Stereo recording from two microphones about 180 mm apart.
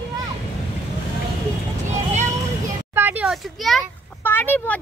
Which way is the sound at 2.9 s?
10° right (ahead or behind).